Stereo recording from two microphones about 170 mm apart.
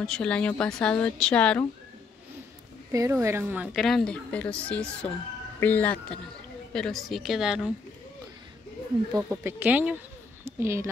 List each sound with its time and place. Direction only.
0.0 s a woman's voice: 5° left (ahead or behind)
2.9 s a woman's voice: 15° right (ahead or behind)
3.8 s a woman's voice: 5° left (ahead or behind)
9.1 s a woman's voice: 15° right (ahead or behind)
10.4 s a sound: 15° right (ahead or behind)